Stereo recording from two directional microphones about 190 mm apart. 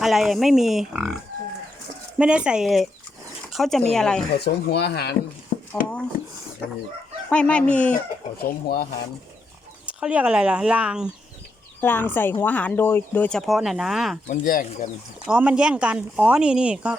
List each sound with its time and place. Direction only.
0.0 s speech: centre (ahead or behind)
2.1 s speech: 5° right (ahead or behind)
4.4 s speech: 60° left (ahead or behind)
5.5 s a sound: 50° left (ahead or behind)
7.3 s speech: 5° left (ahead or behind)
8.4 s speech: 55° left (ahead or behind)
10.0 s speech: 5° right (ahead or behind)
11.8 s speech: 10° left (ahead or behind)
14.3 s speech: 45° left (ahead or behind)
15.3 s speech: 5° right (ahead or behind)